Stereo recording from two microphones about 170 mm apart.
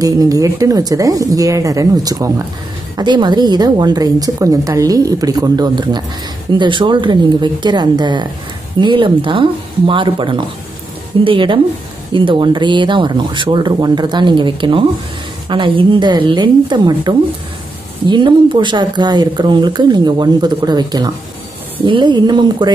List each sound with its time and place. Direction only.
0.0 s speech: 20° right (ahead or behind)